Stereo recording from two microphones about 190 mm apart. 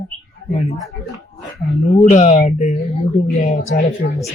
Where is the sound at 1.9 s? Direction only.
35° left (ahead or behind).